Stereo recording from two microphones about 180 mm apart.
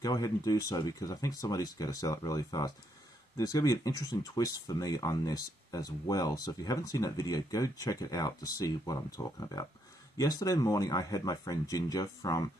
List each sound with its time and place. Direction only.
0.0 s speech: 20° left (ahead or behind)